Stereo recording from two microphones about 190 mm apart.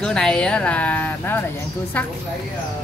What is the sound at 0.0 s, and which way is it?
Speech, 5° left (ahead or behind).